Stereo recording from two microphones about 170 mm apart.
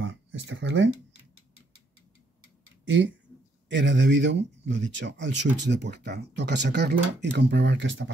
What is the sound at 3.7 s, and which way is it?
Speech, 90° right.